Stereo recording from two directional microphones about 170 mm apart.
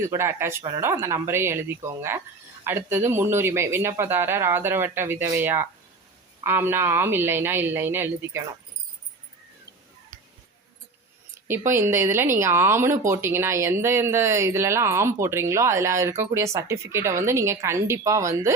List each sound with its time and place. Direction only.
0.1 s speech: 15° right (ahead or behind)
11.4 s speech: 15° right (ahead or behind)